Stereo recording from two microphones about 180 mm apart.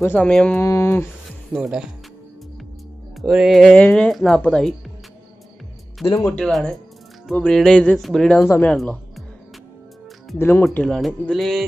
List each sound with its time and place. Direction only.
0.0 s speech: 10° left (ahead or behind)
0.6 s speech: 15° left (ahead or behind)
1.5 s speech: 5° right (ahead or behind)
3.2 s speech: centre (ahead or behind)
6.0 s speech: 15° left (ahead or behind)
6.3 s speech: 5° left (ahead or behind)
10.4 s speech: 15° left (ahead or behind)